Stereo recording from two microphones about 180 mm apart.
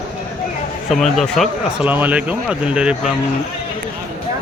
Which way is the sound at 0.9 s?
Centre (ahead or behind).